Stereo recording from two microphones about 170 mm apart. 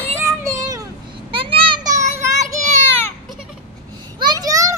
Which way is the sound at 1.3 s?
30° right (ahead or behind).